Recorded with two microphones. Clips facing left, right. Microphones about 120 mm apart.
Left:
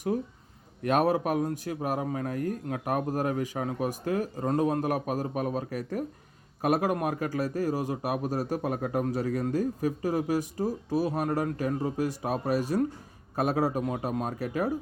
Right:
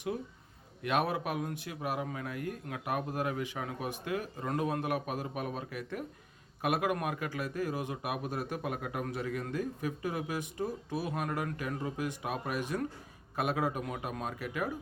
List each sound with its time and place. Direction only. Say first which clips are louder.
0.8 s a man's voice: left 7 dB; 40° left (ahead or behind)